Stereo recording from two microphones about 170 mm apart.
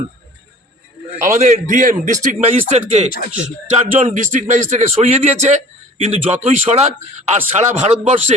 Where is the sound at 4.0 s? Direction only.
45° right (ahead or behind).